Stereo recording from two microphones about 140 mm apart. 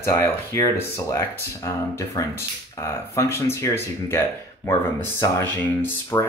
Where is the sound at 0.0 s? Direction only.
20° left (ahead or behind).